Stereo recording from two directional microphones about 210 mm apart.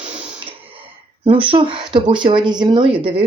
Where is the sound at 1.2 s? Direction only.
25° right (ahead or behind).